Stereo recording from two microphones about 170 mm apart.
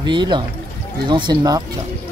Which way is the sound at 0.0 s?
25° right (ahead or behind).